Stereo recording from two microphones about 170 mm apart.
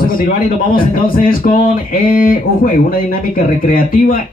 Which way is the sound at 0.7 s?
55° left (ahead or behind).